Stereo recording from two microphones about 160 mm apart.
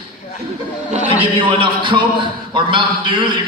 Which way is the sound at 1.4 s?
30° right (ahead or behind).